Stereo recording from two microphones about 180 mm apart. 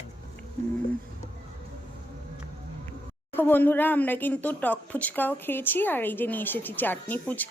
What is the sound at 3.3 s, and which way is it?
Speech, 10° left (ahead or behind).